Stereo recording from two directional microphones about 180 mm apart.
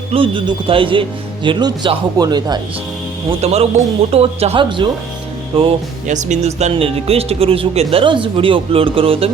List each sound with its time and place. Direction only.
0.1 s speech: 30° right (ahead or behind)
3.4 s speech: 35° right (ahead or behind)
6.1 s speech: 40° right (ahead or behind)